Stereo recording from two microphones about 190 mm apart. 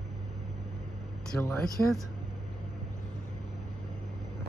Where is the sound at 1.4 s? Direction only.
5° left (ahead or behind).